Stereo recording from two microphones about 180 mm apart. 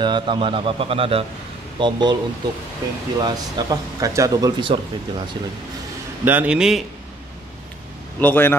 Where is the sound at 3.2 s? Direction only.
25° right (ahead or behind).